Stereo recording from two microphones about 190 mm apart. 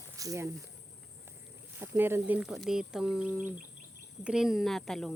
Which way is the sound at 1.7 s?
10° right (ahead or behind).